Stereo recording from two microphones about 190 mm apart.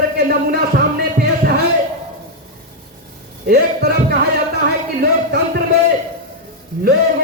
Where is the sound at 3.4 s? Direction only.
50° right (ahead or behind).